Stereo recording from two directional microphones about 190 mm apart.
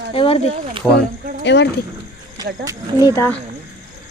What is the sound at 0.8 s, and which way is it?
Speech, 5° left (ahead or behind).